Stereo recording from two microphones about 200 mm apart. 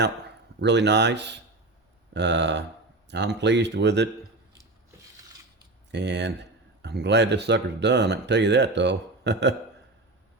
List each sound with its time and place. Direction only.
0.6 s speech: 60° right (ahead or behind)
5.9 s speech: 60° right (ahead or behind)